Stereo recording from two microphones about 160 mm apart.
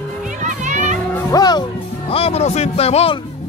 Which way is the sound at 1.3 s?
25° left (ahead or behind).